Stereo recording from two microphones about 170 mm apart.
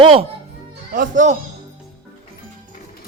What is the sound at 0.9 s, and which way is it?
Speech, 50° right (ahead or behind).